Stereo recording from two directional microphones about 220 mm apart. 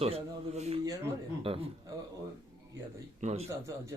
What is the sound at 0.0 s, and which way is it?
A man's voice, 30° right (ahead or behind).